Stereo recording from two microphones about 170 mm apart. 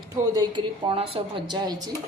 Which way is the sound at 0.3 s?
30° right (ahead or behind).